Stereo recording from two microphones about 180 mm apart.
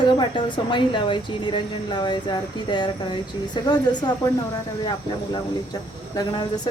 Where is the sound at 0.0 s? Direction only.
25° left (ahead or behind).